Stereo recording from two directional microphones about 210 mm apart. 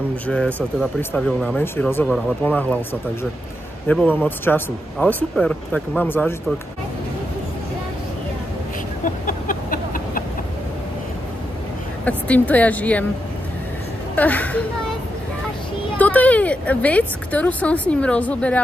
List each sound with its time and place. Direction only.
1.1 s a woman's voice: 5° left (ahead or behind)
9.0 s a sound: 40° left (ahead or behind)
12.0 s a woman's voice: 5° left (ahead or behind)
14.1 s a woman's voice: 5° left (ahead or behind)
16.0 s a woman's voice: 5° left (ahead or behind)